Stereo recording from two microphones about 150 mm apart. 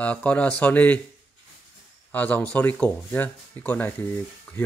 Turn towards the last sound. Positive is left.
turn(degrees=10)  # may be behind; listen again after turning